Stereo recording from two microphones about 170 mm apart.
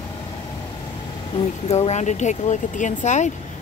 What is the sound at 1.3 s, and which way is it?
Speech, 35° left (ahead or behind).